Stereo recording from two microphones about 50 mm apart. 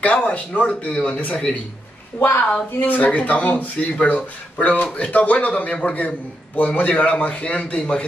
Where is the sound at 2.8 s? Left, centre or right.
Left.